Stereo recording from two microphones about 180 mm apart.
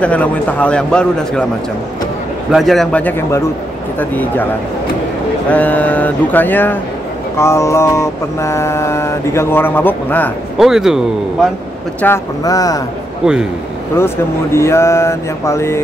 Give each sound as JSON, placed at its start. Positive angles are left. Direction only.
{"t": 0.0, "sound": "mantra", "side_deg": 5}
{"t": 2.5, "sound": "mantra", "side_deg": 0}
{"t": 5.5, "sound": "mantra", "side_deg": 10}
{"t": 10.6, "sound": "a man's voice", "side_deg": 0}
{"t": 12.0, "sound": "speech", "side_deg": 15}
{"t": 13.2, "sound": "a man's voice", "side_deg": -5}
{"t": 13.9, "sound": "mantra", "side_deg": 15}